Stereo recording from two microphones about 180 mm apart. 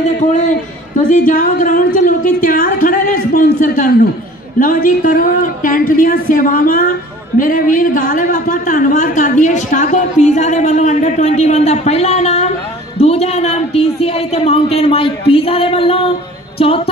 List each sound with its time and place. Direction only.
1.0 s a man's voice: 45° left (ahead or behind)